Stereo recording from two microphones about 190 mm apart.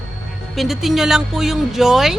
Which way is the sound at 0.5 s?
Centre (ahead or behind).